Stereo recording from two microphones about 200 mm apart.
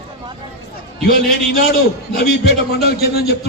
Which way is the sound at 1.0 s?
50° left (ahead or behind).